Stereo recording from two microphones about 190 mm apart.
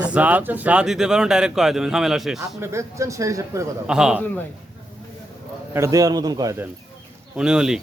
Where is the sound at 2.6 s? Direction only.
15° right (ahead or behind).